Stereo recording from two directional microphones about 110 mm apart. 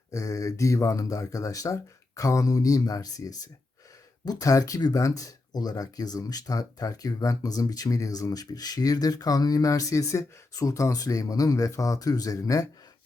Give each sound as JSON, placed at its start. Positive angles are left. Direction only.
{"t": 0.1, "sound": "speech", "side_deg": 30}